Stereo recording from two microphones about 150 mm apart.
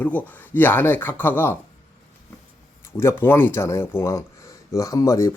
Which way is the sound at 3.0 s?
15° left (ahead or behind).